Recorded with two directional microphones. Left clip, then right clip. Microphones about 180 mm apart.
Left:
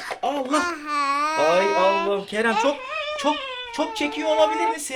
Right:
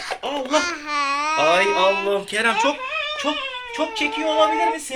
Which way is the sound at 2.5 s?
40° left (ahead or behind).